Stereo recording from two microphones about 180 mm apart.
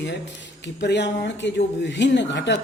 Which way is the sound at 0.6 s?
75° left (ahead or behind).